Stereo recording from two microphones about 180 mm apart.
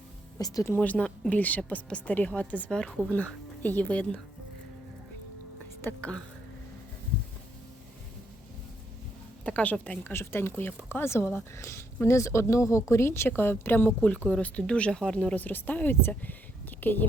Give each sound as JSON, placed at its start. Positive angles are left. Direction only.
{"t": 0.3, "sound": "speech", "side_deg": 20}
{"t": 0.8, "sound": "speech", "side_deg": 5}
{"t": 5.8, "sound": "speech", "side_deg": 5}
{"t": 9.4, "sound": "speech", "side_deg": 10}